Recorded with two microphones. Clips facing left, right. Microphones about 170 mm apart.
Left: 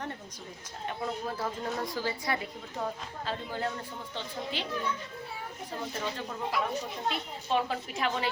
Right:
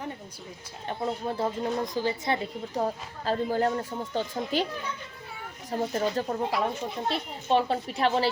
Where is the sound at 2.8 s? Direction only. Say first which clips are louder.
Right 5 dB; 40° right (ahead or behind).